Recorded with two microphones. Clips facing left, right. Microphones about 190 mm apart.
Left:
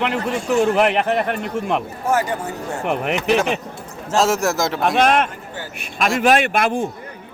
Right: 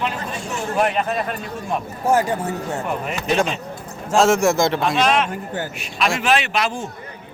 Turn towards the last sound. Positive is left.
turn(degrees=55)  # may be behind; listen again after turning